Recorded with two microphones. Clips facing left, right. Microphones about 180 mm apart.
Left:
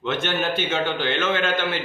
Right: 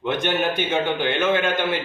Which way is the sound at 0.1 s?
15° right (ahead or behind).